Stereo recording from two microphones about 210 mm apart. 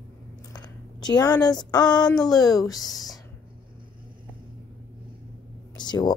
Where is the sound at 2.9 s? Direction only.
Centre (ahead or behind).